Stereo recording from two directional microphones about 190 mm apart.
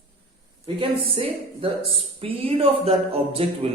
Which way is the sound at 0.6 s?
25° right (ahead or behind).